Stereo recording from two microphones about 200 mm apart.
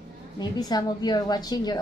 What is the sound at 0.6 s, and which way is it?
A woman's voice, 20° left (ahead or behind).